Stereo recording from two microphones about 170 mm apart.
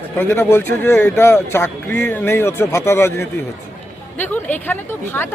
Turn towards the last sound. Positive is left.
turn(degrees=10)  # may be behind; listen again after turning